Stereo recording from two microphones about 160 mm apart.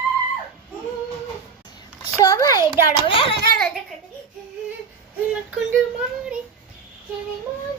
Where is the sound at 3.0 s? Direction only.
35° left (ahead or behind).